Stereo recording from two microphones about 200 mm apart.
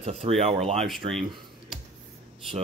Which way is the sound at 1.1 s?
Centre (ahead or behind).